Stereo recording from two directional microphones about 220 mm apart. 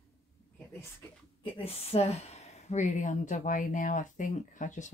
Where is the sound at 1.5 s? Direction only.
25° left (ahead or behind).